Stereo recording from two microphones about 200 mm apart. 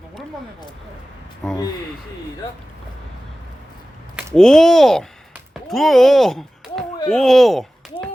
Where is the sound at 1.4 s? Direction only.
5° left (ahead or behind).